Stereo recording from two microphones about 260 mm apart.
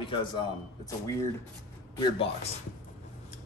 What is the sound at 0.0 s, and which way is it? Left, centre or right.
A man's voice, centre.